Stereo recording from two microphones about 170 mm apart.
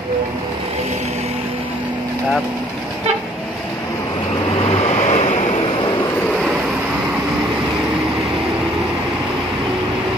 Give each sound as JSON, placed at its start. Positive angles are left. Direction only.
{"t": 4.6, "sound": "vehicle", "side_deg": 35}